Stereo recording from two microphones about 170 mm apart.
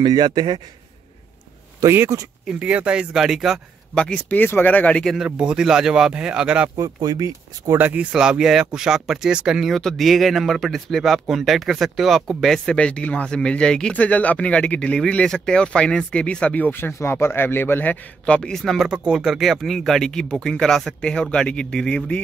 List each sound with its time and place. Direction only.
0.0 s speech: 25° right (ahead or behind)
1.8 s speech: 15° right (ahead or behind)
2.4 s speech: 5° right (ahead or behind)
5.1 s speech: 5° right (ahead or behind)
6.8 s speech: 25° right (ahead or behind)
7.7 s speech: 10° right (ahead or behind); by 22.2 s 5° left (ahead or behind)